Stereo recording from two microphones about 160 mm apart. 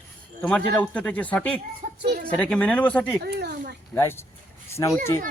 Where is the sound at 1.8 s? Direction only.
55° right (ahead or behind).